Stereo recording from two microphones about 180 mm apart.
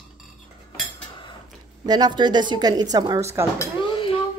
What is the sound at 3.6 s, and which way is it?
Dishes, 30° left (ahead or behind).